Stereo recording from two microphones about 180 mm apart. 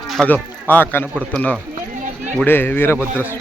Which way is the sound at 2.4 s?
10° left (ahead or behind).